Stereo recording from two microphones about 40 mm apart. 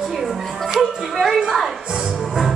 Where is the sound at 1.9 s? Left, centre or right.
Centre.